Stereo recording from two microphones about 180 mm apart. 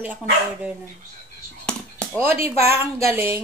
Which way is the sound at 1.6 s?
5° left (ahead or behind).